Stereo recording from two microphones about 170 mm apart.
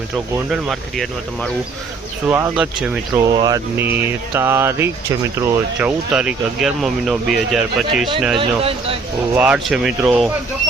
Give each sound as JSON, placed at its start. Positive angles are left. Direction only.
{"t": 0.3, "sound": "speech", "side_deg": 0}
{"t": 2.2, "sound": "music", "side_deg": -10}
{"t": 3.1, "sound": "speech", "side_deg": -25}
{"t": 3.8, "sound": "music", "side_deg": -10}
{"t": 6.1, "sound": "speech", "side_deg": -5}
{"t": 8.4, "sound": "speech", "side_deg": -35}
{"t": 9.3, "sound": "speech", "side_deg": -10}